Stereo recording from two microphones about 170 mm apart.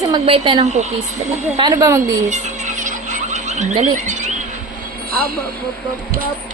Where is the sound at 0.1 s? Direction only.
30° right (ahead or behind).